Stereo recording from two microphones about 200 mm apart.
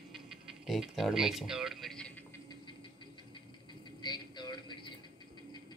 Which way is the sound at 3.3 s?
20° left (ahead or behind).